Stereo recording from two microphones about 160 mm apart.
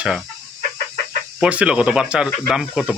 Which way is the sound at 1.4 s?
5° right (ahead or behind).